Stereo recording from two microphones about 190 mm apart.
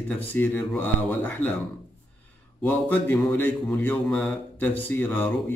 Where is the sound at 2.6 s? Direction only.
10° left (ahead or behind).